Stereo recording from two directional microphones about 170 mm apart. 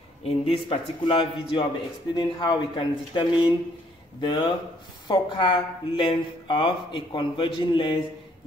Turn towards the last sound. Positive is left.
turn(degrees=30)  # may be behind; listen again after turning